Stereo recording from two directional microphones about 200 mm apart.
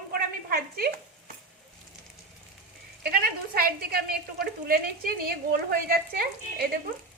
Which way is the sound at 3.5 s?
50° right (ahead or behind).